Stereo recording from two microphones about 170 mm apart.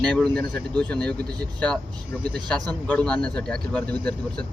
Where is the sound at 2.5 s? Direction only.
5° left (ahead or behind).